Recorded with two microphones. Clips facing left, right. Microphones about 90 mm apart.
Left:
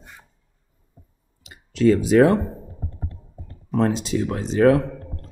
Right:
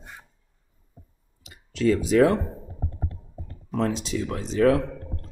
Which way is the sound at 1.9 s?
60° left (ahead or behind).